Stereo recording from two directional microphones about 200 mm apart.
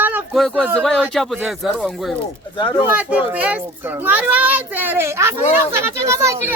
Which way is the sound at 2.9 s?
5° right (ahead or behind).